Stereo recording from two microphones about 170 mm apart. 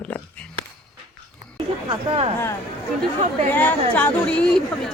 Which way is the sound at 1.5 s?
30° right (ahead or behind).